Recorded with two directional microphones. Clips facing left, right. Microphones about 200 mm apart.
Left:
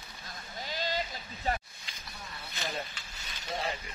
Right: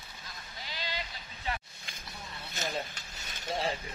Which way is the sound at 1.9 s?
50° right (ahead or behind).